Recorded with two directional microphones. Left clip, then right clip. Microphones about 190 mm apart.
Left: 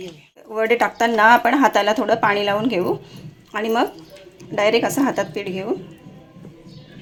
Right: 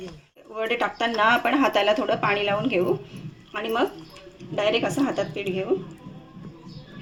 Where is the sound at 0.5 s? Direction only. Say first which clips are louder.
Left 7 dB; 35° left (ahead or behind).